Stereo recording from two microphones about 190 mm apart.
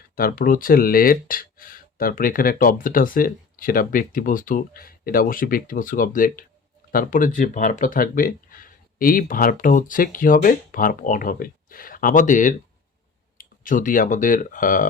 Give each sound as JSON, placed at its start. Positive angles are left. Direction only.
{"t": 0.2, "sound": "speech", "side_deg": 50}